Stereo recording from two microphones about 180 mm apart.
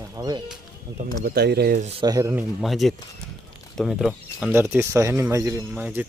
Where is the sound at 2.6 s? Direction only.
Centre (ahead or behind).